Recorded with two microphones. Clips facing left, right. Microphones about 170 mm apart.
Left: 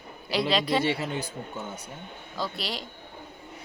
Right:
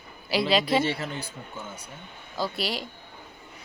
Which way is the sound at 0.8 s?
15° left (ahead or behind).